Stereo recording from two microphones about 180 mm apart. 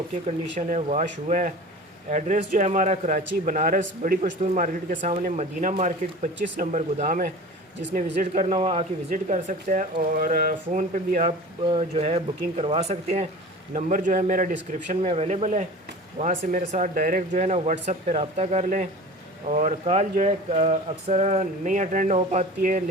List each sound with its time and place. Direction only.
0.7 s speech: 40° right (ahead or behind)
8.4 s speech: 30° right (ahead or behind)
9.0 s speech: 45° right (ahead or behind)
11.6 s speech: 30° right (ahead or behind)